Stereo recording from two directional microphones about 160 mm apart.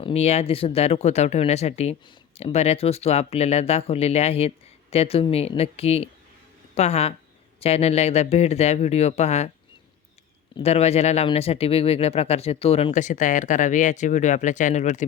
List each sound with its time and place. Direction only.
0.0 s speech: 40° left (ahead or behind)
10.5 s speech: 40° left (ahead or behind)